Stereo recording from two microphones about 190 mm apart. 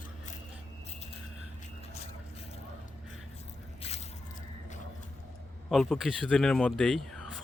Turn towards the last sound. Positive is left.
turn(degrees=0)  # may be behind; listen again after turning